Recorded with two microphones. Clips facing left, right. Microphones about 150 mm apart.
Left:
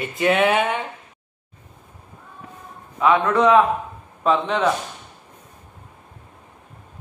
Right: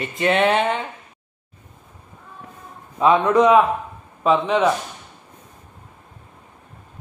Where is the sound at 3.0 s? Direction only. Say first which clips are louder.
Right 2 dB; 25° right (ahead or behind); by 4.7 s 5° right (ahead or behind).